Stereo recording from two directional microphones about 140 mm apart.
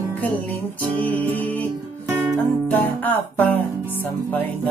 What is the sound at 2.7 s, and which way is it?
Music, 10° left (ahead or behind).